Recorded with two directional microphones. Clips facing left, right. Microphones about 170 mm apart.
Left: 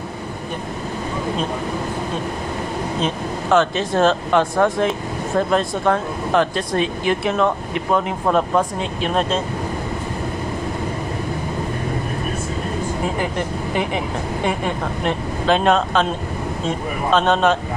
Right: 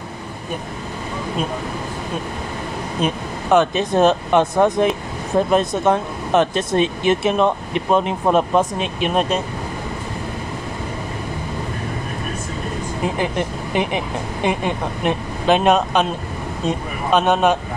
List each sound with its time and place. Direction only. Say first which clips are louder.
3.0 s speech: right 4 dB; 15° right (ahead or behind)
13.2 s speech: right 1 dB; 20° right (ahead or behind)